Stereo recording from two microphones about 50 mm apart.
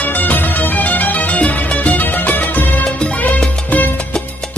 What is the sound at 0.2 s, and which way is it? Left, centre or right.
Music, left.